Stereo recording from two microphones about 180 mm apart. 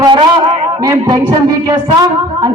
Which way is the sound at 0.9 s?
15° right (ahead or behind).